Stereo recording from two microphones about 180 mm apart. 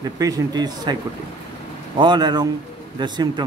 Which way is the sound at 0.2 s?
20° right (ahead or behind).